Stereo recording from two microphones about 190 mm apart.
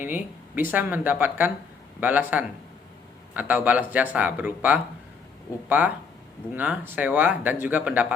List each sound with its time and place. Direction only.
0.0 s speech: 10° right (ahead or behind)